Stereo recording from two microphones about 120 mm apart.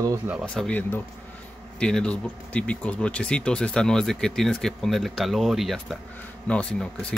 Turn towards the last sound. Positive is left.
turn(degrees=10)  # may be behind; listen again after turning